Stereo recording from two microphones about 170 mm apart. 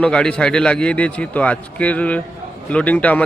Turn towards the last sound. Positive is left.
turn(degrees=10)  # may be behind; listen again after turning